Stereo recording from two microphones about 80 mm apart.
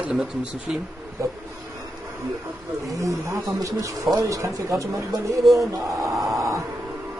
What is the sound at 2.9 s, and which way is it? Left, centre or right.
Speech, right.